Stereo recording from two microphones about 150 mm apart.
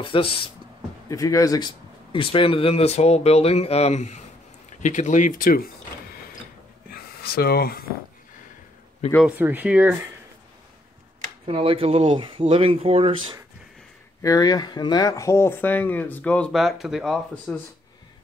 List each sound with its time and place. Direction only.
0.0 s speech: 35° left (ahead or behind)
1.0 s speech: 20° left (ahead or behind)
2.1 s speech: 35° left (ahead or behind); by 5.7 s 70° left (ahead or behind)
6.9 s a sound: 90° left
9.0 s speech: 45° left (ahead or behind)
9.4 s speech: 10° right (ahead or behind)
11.1 s speech: 40° right (ahead or behind)
14.2 s speech: 25° left (ahead or behind); by 17.6 s centre (ahead or behind)